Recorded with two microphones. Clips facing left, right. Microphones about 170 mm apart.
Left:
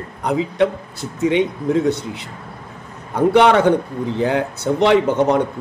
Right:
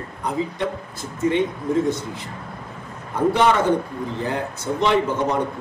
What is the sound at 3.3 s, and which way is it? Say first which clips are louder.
Speech: left 6 dB; 70° left (ahead or behind).